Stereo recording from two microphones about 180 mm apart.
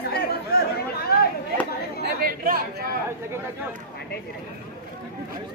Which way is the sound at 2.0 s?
55° right (ahead or behind).